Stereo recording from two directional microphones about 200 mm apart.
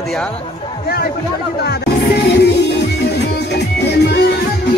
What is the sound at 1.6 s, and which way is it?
Music, 55° left (ahead or behind).